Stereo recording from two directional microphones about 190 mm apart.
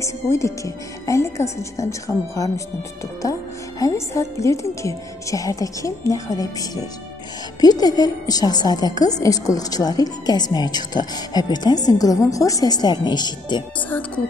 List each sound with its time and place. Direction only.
0.0 s a woman's voice: 15° left (ahead or behind)
13.7 s a woman's voice: 10° left (ahead or behind)